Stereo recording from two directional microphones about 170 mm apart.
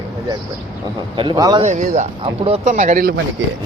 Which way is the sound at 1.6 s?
45° right (ahead or behind).